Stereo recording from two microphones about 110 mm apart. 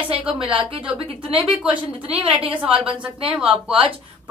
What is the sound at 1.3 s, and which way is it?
A woman's voice, 10° right (ahead or behind).